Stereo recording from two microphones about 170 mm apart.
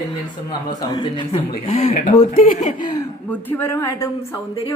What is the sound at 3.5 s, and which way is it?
Speech, 15° left (ahead or behind).